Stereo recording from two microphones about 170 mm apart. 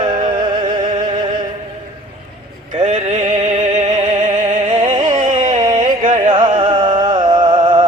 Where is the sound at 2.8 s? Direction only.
35° right (ahead or behind).